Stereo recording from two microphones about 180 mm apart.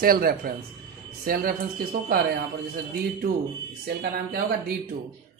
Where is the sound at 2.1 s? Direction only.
55° right (ahead or behind).